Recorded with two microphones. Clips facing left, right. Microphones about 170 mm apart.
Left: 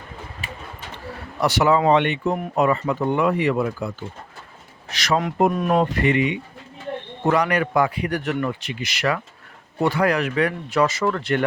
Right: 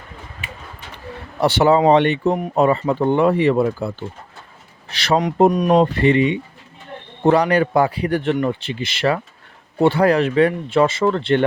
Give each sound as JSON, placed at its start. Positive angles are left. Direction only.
{"t": 1.4, "sound": "a man's voice", "side_deg": -30}
{"t": 5.5, "sound": "speech", "side_deg": -20}
{"t": 5.7, "sound": "a man's voice", "side_deg": -30}